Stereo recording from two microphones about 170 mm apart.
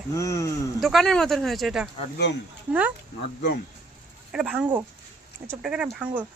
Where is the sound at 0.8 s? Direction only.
Centre (ahead or behind).